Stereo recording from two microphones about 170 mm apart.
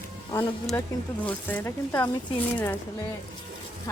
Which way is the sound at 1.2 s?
10° left (ahead or behind).